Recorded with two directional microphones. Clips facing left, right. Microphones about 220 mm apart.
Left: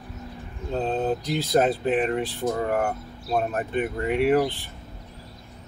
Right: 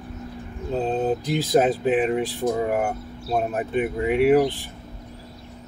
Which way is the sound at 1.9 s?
5° right (ahead or behind).